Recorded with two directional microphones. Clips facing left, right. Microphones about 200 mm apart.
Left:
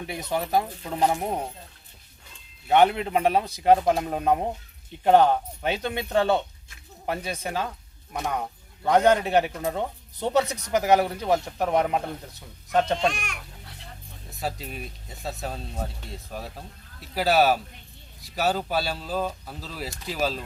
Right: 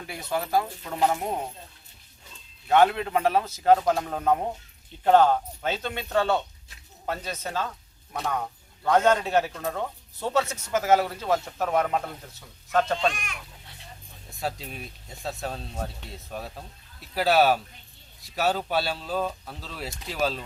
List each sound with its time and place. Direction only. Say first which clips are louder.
0.0 s a man's voice: left 2 dB; 20° left (ahead or behind)
0.9 s a man's voice: left 1 dB; 30° left (ahead or behind)
2.6 s a man's voice: left 1 dB; 20° left (ahead or behind)
14.3 s speech: even; centre (ahead or behind)